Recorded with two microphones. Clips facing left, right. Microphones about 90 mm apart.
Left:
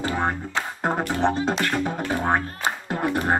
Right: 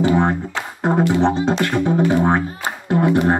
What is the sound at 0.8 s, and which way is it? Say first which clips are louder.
Music: right 7 dB; 20° right (ahead or behind).